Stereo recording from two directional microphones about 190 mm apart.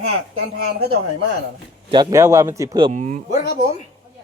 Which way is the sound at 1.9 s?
20° right (ahead or behind).